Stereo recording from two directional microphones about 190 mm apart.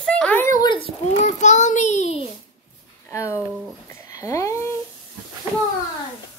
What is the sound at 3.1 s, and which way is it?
Speech, 15° left (ahead or behind).